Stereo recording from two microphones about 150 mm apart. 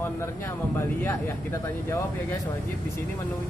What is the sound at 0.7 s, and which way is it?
Speech, 15° left (ahead or behind).